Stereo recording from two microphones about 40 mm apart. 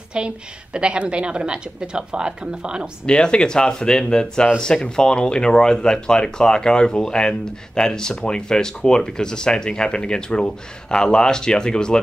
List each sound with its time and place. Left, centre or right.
0.2 s a woman's voice: right
3.1 s speech: left